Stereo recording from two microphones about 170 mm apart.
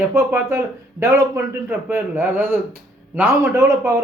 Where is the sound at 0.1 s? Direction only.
15° right (ahead or behind).